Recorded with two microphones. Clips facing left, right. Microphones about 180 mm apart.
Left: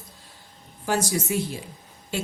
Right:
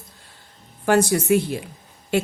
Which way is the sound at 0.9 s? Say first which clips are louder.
Right 8 dB; 60° right (ahead or behind).